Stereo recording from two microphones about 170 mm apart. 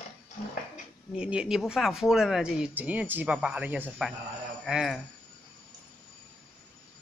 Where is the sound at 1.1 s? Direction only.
5° right (ahead or behind).